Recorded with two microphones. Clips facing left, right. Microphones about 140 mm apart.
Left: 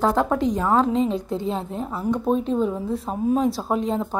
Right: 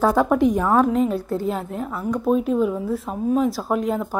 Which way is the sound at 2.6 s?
25° left (ahead or behind).